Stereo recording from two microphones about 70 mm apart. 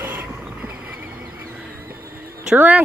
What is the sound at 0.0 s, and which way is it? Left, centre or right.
Vehicle, centre.